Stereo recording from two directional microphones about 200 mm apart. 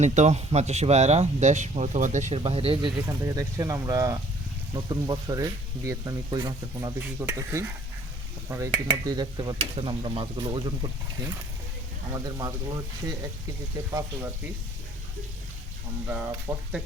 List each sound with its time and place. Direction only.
0.0 s speech: 35° right (ahead or behind); by 14.5 s 15° right (ahead or behind)
16.0 s speech: 10° right (ahead or behind)